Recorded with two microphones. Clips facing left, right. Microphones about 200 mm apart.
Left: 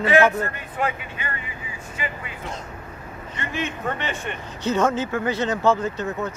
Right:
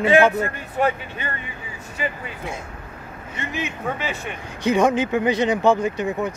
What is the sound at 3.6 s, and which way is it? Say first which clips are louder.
Speech: even; 10° right (ahead or behind).